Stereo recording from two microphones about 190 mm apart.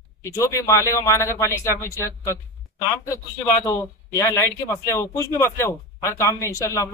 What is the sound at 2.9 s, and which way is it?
Speech, 15° left (ahead or behind).